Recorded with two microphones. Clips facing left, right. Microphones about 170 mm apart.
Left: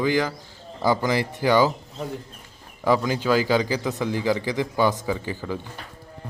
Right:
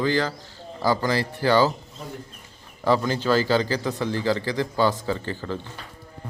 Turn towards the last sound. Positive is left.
turn(degrees=10)  # may be behind; listen again after turning